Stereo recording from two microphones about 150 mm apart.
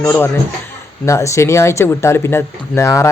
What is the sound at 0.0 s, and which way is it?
Speech, 15° left (ahead or behind).